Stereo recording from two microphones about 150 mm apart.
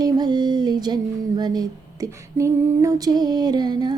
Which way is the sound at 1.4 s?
25° right (ahead or behind).